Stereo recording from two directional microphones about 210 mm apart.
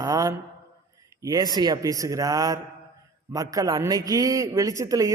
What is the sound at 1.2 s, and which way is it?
A man's voice, 15° right (ahead or behind).